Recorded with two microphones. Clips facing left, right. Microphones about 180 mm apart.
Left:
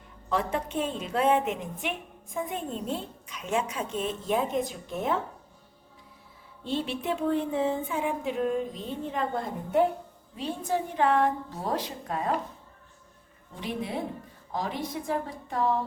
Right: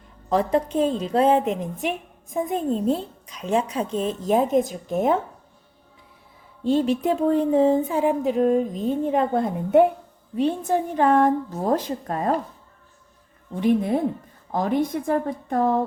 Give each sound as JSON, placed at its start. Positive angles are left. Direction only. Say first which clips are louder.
{"t": 0.3, "sound": "speech", "louder": "right 8 dB", "side_deg": -35}
{"t": 6.7, "sound": "a woman's voice", "louder": "right 10 dB", "side_deg": -40}
{"t": 13.6, "sound": "a woman's voice", "louder": "right 12 dB", "side_deg": -50}